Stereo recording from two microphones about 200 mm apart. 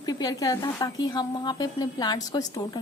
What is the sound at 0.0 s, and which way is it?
A woman's voice, 20° left (ahead or behind).